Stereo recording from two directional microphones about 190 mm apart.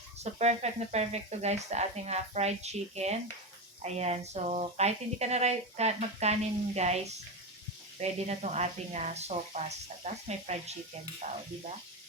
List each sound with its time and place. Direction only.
0.2 s speech: 35° right (ahead or behind)
8.0 s speech: 35° right (ahead or behind)